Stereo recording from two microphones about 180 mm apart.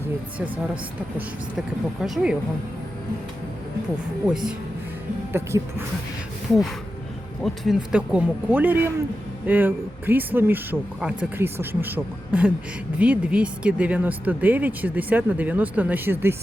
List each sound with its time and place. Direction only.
1.5 s speech: centre (ahead or behind)
4.3 s speech: 5° right (ahead or behind)
5.3 s speech: 15° right (ahead or behind)
7.4 s speech: centre (ahead or behind)